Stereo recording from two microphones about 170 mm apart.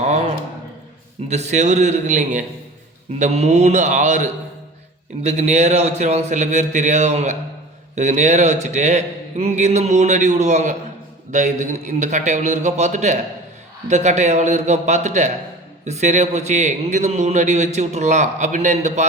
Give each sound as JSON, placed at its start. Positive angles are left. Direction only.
{"t": 1.3, "sound": "a man's voice", "side_deg": -40}